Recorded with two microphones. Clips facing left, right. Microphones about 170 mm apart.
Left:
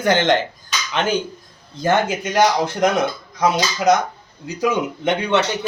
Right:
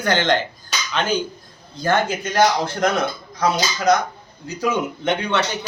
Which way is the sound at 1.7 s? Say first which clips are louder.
Left 2 dB; 20° left (ahead or behind).